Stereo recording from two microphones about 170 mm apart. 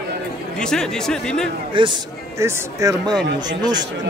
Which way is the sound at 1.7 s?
30° right (ahead or behind).